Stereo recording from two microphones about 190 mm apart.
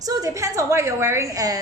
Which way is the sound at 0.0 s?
20° right (ahead or behind).